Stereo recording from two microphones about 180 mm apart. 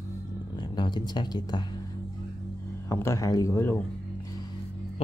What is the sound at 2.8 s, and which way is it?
Speech, 15° left (ahead or behind).